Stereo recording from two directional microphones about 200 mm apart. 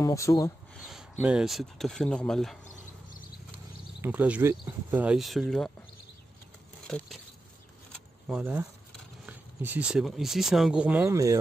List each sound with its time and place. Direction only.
0.0 s speech: 15° left (ahead or behind)
0.7 s speech: centre (ahead or behind)
4.0 s speech: 10° right (ahead or behind)
6.9 s speech: centre (ahead or behind)
7.9 s vehicle: centre (ahead or behind)
9.2 s speech: 10° right (ahead or behind)